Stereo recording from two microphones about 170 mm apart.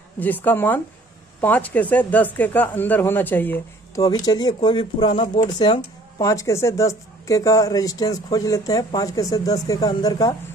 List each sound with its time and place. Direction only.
0.2 s a woman's voice: 10° left (ahead or behind)